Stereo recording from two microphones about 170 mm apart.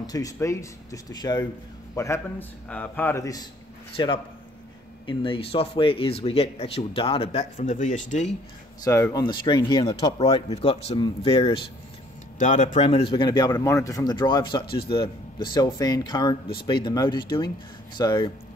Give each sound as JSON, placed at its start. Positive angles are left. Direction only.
{"t": 0.0, "sound": "a man's voice", "side_deg": 20}
{"t": 3.9, "sound": "speech", "side_deg": 30}
{"t": 7.5, "sound": "speech", "side_deg": 45}
{"t": 8.8, "sound": "speech", "side_deg": 20}
{"t": 12.4, "sound": "speech", "side_deg": 45}